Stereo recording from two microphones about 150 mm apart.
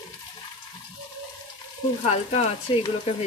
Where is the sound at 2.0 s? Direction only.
45° left (ahead or behind).